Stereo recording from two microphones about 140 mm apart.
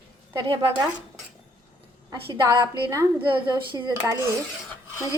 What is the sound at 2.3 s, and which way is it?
A woman's voice, 35° right (ahead or behind).